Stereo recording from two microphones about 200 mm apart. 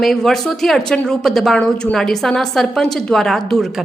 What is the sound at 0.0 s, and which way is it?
A woman's voice, centre (ahead or behind).